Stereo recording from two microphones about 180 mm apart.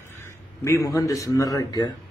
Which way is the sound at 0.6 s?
15° left (ahead or behind).